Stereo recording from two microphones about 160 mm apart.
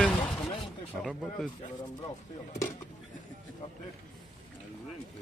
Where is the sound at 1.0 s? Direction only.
Centre (ahead or behind).